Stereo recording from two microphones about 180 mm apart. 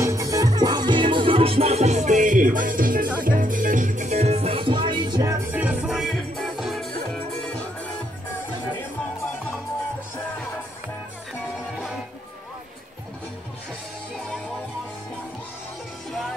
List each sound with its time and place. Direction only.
0.0 s music: 15° right (ahead or behind); by 6.9 s centre (ahead or behind)